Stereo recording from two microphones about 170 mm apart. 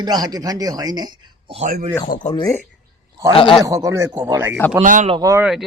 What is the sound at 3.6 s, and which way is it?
Speech, 20° right (ahead or behind).